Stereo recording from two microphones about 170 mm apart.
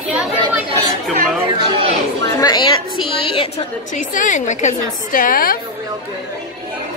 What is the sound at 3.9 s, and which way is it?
A woman's voice, 50° left (ahead or behind).